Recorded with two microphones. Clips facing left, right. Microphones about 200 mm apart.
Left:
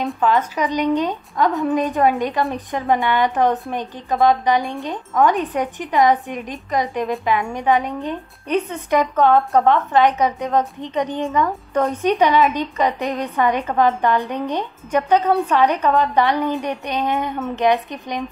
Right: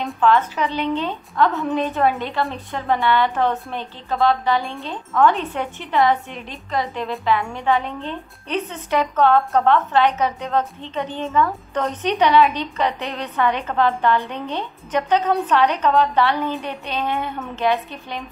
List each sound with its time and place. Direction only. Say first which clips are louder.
0.2 s a woman's voice: right 2 dB; 10° left (ahead or behind)